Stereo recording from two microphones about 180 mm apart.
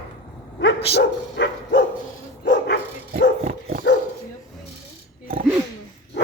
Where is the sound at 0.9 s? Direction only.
70° left (ahead or behind).